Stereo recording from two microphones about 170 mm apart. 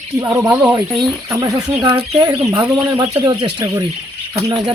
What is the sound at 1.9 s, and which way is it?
Speech, 35° right (ahead or behind).